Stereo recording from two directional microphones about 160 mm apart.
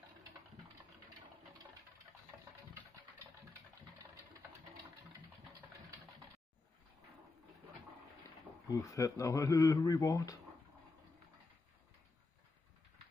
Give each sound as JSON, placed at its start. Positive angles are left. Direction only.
{"t": 8.6, "sound": "speech", "side_deg": 20}